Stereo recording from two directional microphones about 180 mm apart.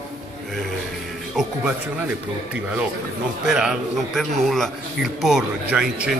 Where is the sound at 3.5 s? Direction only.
5° right (ahead or behind).